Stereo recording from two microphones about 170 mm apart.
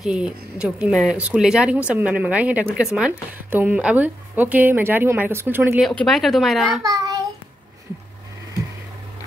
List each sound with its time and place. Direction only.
0.0 s speech: 5° right (ahead or behind)
5.8 s speech: centre (ahead or behind)
6.8 s a child's voice: 20° right (ahead or behind)